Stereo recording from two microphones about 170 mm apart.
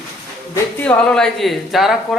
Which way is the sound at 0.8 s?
5° left (ahead or behind).